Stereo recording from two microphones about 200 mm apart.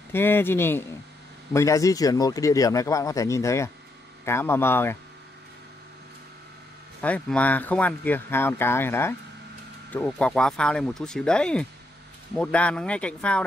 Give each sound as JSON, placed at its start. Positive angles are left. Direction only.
{"t": 0.1, "sound": "speech", "side_deg": 10}
{"t": 7.0, "sound": "speech", "side_deg": 5}